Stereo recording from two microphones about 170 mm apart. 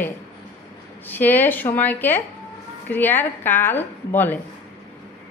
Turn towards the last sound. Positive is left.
turn(degrees=10)  # may be behind; listen again after turning